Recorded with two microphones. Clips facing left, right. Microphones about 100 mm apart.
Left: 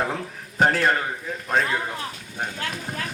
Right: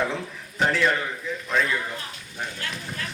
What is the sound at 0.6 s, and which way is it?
A man's voice, 45° left (ahead or behind).